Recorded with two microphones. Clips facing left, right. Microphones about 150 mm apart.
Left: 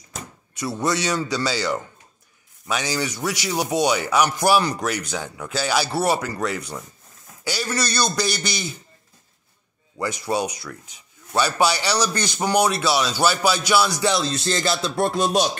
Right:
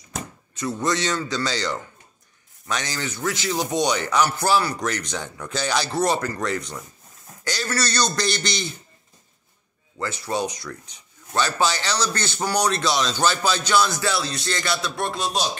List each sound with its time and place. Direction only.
0.6 s speech: 10° left (ahead or behind)
9.9 s speech: 15° left (ahead or behind)
15.0 s music: 50° left (ahead or behind)